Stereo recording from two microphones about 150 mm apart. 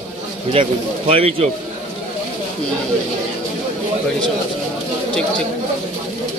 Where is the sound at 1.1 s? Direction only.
40° right (ahead or behind).